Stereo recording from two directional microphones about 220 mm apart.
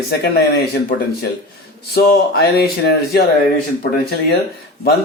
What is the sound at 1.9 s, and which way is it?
Speech, 45° left (ahead or behind).